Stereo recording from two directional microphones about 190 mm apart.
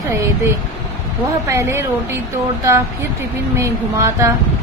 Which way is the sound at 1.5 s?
15° right (ahead or behind).